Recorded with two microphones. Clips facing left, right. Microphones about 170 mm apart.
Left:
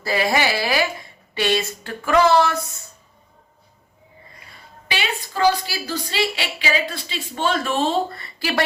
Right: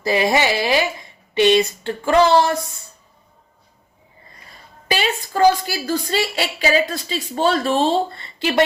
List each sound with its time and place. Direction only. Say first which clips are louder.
0.0 s a woman's voice: right 3 dB; 20° right (ahead or behind)
4.9 s a woman's voice: right 5 dB; 45° right (ahead or behind); by 8.6 s 20° right (ahead or behind)